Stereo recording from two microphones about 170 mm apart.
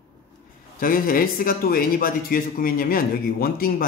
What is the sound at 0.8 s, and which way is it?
Speech, 55° left (ahead or behind).